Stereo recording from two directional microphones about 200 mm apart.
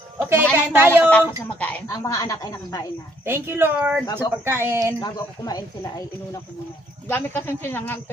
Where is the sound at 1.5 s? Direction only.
5° left (ahead or behind).